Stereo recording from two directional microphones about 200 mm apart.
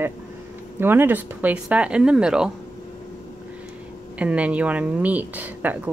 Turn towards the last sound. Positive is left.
turn(degrees=-10)  # may be behind; listen again after turning